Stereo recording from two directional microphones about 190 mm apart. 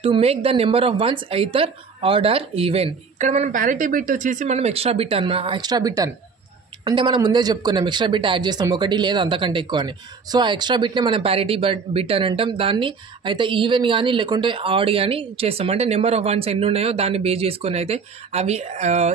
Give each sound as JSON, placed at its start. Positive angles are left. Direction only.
{"t": 0.0, "sound": "a woman's voice", "side_deg": -30}